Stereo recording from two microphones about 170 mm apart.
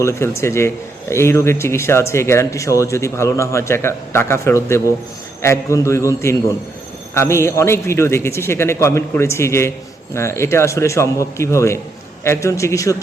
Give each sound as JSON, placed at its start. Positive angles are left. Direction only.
{"t": 0.0, "sound": "speech", "side_deg": 15}